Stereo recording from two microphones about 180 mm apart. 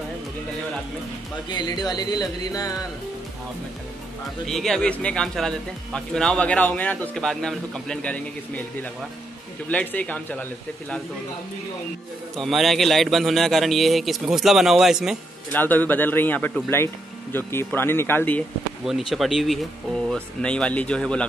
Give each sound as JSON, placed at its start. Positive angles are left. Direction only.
{"t": 1.5, "sound": "speech", "side_deg": 20}
{"t": 4.5, "sound": "speech", "side_deg": 0}
{"t": 9.7, "sound": "speech", "side_deg": 10}
{"t": 12.4, "sound": "speech", "side_deg": 0}
{"t": 15.5, "sound": "speech", "side_deg": 10}
{"t": 18.9, "sound": "speech", "side_deg": 0}